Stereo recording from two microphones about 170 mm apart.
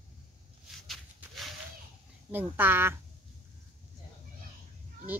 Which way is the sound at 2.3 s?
10° right (ahead or behind).